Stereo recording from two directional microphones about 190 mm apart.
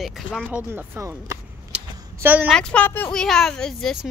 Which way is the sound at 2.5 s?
5° left (ahead or behind).